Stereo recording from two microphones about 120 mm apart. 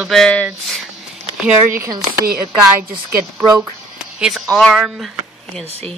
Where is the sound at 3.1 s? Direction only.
25° right (ahead or behind).